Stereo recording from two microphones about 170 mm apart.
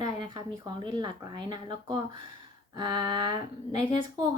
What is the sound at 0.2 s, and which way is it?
Speech, 25° right (ahead or behind).